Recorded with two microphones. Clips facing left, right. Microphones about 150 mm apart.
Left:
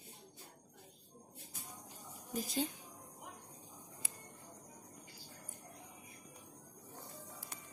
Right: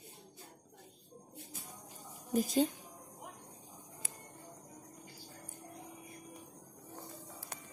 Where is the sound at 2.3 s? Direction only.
45° right (ahead or behind).